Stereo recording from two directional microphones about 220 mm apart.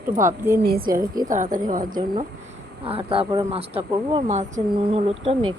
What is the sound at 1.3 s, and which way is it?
Speech, 35° right (ahead or behind).